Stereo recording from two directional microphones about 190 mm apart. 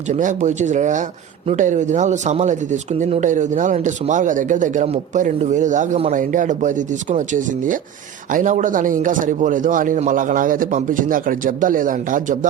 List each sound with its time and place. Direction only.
0.1 s speech: 40° right (ahead or behind)